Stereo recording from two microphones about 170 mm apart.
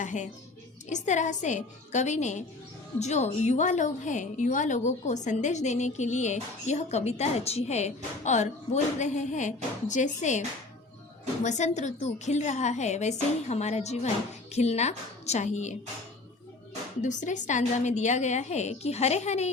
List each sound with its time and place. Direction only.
0.0 s music: 45° left (ahead or behind)
0.9 s a woman's voice: 45° left (ahead or behind)
11.4 s a woman's voice: 45° left (ahead or behind)
17.0 s a woman's voice: 45° left (ahead or behind)